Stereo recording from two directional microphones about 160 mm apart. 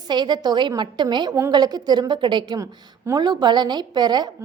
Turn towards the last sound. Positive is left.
turn(degrees=-25)  # may be behind; listen again after turning